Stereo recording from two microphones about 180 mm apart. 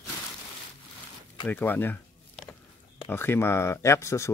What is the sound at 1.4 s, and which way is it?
Speech, 10° left (ahead or behind).